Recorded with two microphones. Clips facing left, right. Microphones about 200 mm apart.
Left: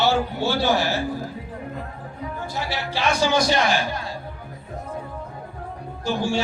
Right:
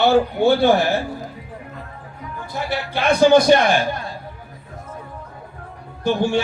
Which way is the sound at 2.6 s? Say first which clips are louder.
Right 4 dB; 55° right (ahead or behind).